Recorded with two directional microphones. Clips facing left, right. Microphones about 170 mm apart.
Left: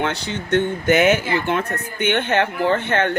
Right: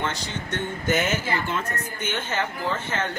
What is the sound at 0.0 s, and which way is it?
Speech, 65° left (ahead or behind).